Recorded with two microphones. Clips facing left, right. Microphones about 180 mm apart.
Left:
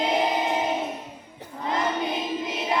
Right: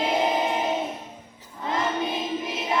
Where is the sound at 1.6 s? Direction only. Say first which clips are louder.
Even; 20° left (ahead or behind).